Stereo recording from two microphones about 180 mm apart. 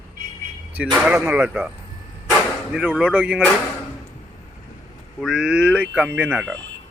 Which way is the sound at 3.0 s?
5° right (ahead or behind).